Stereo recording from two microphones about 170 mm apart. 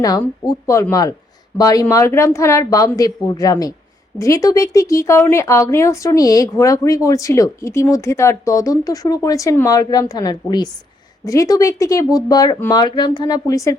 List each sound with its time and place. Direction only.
0.7 s speech: 20° left (ahead or behind)